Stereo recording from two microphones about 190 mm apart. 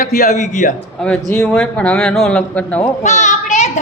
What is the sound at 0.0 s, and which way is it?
Speech, 40° left (ahead or behind).